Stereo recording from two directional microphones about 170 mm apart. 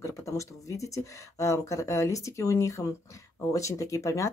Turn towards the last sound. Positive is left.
turn(degrees=20)  # may be behind; listen again after turning